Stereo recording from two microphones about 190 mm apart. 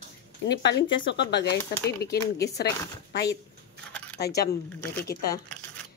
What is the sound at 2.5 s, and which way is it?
Speech, 60° left (ahead or behind).